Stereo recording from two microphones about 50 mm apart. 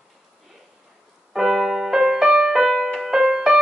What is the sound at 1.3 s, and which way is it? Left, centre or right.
Music, centre.